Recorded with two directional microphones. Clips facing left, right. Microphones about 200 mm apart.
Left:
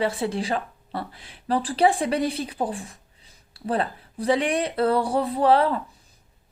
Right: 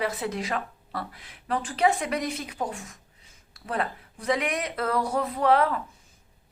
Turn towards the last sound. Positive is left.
turn(degrees=30)  # may be behind; listen again after turning